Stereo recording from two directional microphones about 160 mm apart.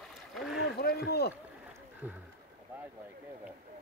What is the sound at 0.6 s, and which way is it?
Speech, 80° left.